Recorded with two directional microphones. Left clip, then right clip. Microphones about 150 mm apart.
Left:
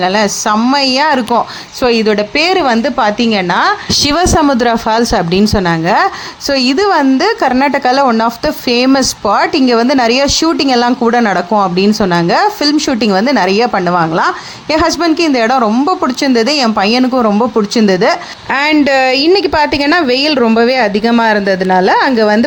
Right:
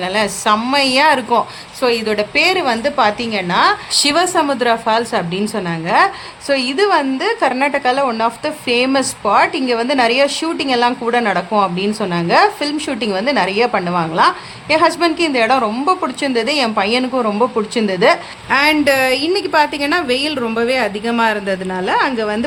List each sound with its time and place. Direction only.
0.0 s speech: 35° left (ahead or behind)
1.8 s a woman's voice: 45° left (ahead or behind)